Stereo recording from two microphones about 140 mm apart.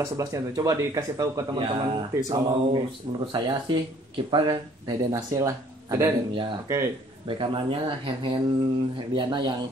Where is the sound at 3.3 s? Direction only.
30° right (ahead or behind).